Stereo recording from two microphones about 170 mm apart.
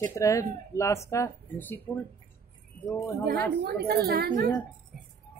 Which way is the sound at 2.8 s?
20° left (ahead or behind).